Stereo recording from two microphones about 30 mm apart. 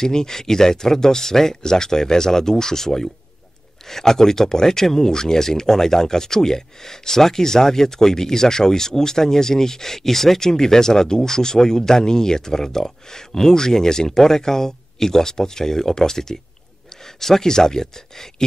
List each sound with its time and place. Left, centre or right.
0.0 s speech: centre